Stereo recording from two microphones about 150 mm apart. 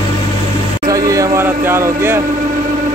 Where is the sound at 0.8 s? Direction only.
25° right (ahead or behind).